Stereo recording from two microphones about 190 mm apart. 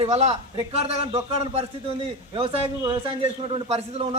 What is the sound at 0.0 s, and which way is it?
A man's voice, 35° right (ahead or behind).